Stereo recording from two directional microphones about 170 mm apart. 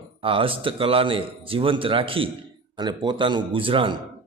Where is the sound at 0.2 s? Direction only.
30° right (ahead or behind).